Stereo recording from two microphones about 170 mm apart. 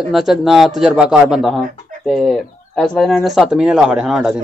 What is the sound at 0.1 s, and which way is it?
Speech, centre (ahead or behind).